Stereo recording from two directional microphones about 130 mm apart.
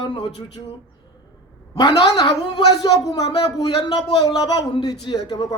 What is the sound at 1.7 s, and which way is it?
A man's voice, 30° left (ahead or behind).